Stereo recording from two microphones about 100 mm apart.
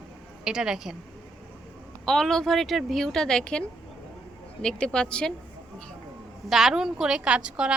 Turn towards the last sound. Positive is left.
turn(degrees=-10)  # may be behind; listen again after turning